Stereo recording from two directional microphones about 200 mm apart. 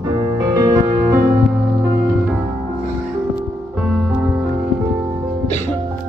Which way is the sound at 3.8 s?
Centre (ahead or behind).